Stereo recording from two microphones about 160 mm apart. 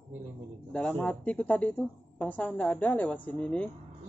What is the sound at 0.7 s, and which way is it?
Speech, 5° left (ahead or behind).